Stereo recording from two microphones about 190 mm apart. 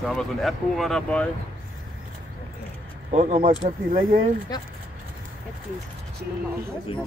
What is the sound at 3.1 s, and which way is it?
Speech, 35° right (ahead or behind).